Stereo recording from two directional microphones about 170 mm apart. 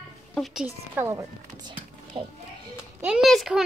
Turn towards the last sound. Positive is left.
turn(degrees=0)  # may be behind; listen again after turning